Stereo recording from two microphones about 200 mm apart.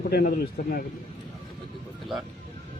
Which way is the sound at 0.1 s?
45° left (ahead or behind).